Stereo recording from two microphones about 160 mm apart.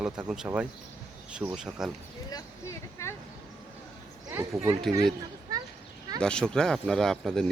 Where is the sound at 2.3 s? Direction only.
20° left (ahead or behind).